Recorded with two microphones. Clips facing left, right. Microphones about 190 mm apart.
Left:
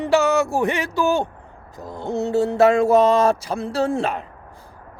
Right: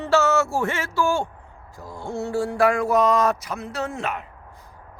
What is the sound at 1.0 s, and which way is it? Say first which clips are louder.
Speech: left 1 dB; 20° left (ahead or behind).